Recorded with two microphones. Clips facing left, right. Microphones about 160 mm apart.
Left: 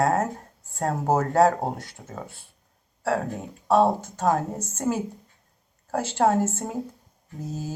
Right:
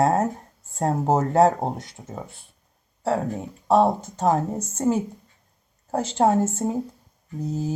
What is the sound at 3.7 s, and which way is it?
A woman's voice, 20° right (ahead or behind).